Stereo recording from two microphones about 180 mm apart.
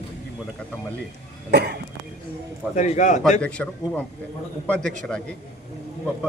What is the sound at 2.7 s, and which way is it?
Speech, 40° left (ahead or behind).